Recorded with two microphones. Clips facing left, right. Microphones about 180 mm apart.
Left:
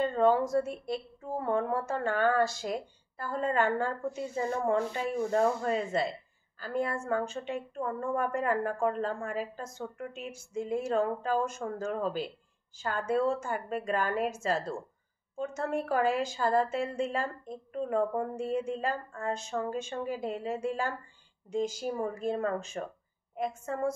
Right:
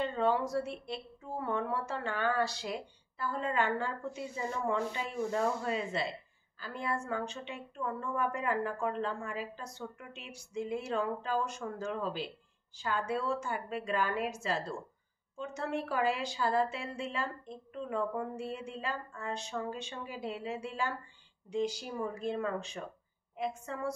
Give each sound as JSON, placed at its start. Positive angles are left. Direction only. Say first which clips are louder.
{"t": 0.0, "sound": "speech", "louder": "left 5 dB", "side_deg": 45}